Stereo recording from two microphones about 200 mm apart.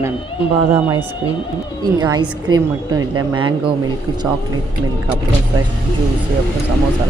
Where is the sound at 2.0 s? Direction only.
20° right (ahead or behind).